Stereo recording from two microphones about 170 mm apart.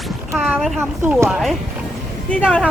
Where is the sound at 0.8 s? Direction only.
15° right (ahead or behind).